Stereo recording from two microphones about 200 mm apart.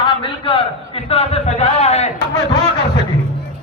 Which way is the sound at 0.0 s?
25° left (ahead or behind).